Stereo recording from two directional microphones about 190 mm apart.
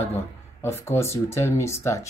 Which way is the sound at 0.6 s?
15° left (ahead or behind).